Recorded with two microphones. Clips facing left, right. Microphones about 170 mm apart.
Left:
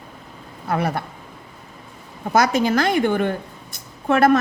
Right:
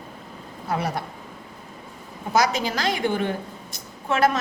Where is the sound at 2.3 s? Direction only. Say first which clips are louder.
Left 5 dB; 55° left (ahead or behind).